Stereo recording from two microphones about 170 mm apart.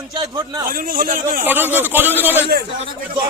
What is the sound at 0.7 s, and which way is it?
Speech, 55° right (ahead or behind).